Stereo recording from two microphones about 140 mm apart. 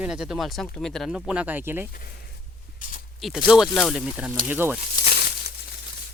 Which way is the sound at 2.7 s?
70° left (ahead or behind).